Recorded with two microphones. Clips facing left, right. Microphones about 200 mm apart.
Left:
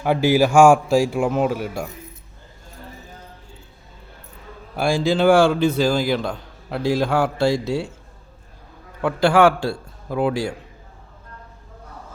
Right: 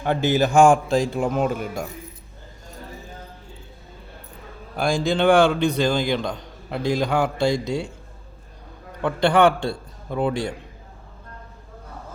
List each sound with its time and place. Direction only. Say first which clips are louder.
0.0 s a man's voice: left 3 dB; 10° left (ahead or behind)
4.8 s a man's voice: left 2 dB; 5° left (ahead or behind)
9.0 s a man's voice: left 2 dB; 5° left (ahead or behind)